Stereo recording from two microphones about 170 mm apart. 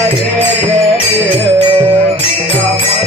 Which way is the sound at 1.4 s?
30° right (ahead or behind).